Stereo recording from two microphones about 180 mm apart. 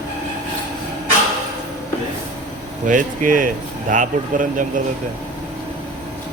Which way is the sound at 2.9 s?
45° right (ahead or behind).